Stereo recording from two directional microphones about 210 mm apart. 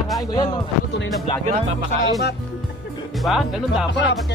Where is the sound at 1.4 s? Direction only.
35° right (ahead or behind).